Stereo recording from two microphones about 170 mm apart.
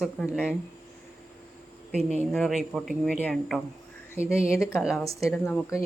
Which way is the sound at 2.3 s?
Centre (ahead or behind).